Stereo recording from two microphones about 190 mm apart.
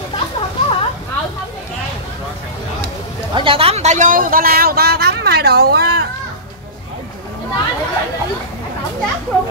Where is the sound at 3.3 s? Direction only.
25° right (ahead or behind); by 5.8 s 55° right (ahead or behind).